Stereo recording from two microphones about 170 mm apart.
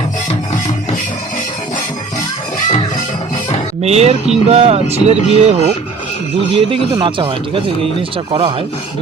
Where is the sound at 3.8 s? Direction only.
40° right (ahead or behind).